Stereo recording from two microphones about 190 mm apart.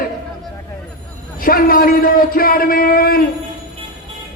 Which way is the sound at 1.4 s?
50° left (ahead or behind).